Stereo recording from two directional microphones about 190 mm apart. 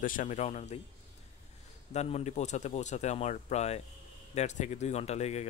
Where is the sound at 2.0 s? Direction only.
35° left (ahead or behind).